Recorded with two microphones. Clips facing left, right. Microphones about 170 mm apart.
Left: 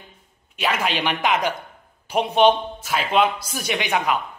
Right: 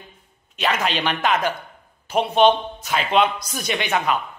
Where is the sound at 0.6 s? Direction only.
10° left (ahead or behind).